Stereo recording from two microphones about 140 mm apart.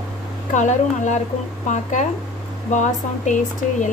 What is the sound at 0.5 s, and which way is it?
A woman's voice, 60° left (ahead or behind).